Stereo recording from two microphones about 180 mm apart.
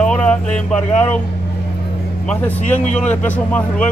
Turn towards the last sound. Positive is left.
turn(degrees=10)  # may be behind; listen again after turning